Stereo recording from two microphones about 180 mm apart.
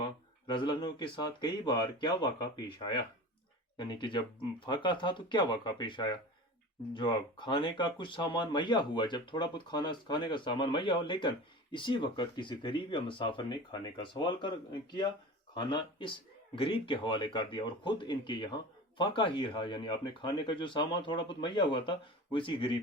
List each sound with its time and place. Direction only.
0.0 s speech: 25° left (ahead or behind)